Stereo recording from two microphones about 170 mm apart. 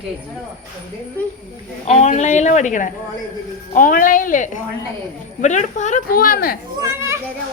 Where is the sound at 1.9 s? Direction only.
45° left (ahead or behind); by 6.6 s 60° left (ahead or behind).